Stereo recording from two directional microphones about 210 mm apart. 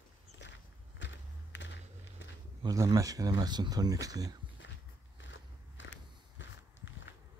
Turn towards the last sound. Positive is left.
turn(degrees=65)  # may be behind; listen again after turning